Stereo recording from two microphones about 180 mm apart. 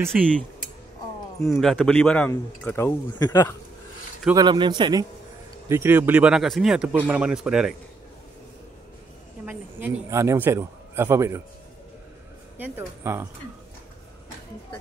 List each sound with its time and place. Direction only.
0.1 s speech: 5° right (ahead or behind)
1.6 s speech: 5° left (ahead or behind)
4.3 s a man's voice: 25° right (ahead or behind)
5.7 s speech: 15° right (ahead or behind)
9.5 s a man's voice: 10° right (ahead or behind)
12.5 s a man's voice: 10° right (ahead or behind)